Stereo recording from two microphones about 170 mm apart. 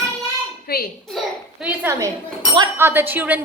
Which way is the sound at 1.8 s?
20° right (ahead or behind).